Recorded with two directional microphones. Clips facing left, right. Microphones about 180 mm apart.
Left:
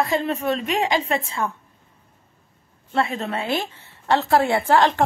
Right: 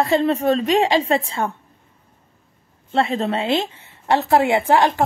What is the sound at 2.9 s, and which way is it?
A woman's voice, 30° right (ahead or behind).